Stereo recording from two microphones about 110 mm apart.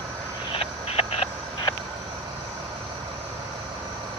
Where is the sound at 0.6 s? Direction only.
65° left (ahead or behind).